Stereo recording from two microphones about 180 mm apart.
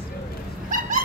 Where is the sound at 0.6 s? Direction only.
50° right (ahead or behind).